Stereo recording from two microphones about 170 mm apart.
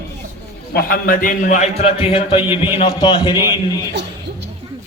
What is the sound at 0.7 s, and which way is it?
A man's voice, 65° left (ahead or behind).